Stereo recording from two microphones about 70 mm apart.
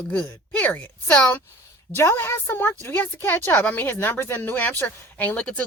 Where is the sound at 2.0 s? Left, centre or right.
Left.